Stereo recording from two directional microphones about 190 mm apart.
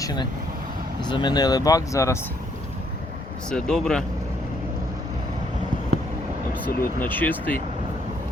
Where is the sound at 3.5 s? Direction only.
5° left (ahead or behind).